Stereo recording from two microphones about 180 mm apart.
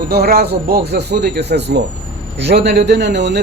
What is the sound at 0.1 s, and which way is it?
Speech, 65° right (ahead or behind).